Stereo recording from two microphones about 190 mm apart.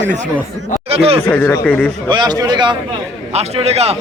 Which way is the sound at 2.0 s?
25° right (ahead or behind).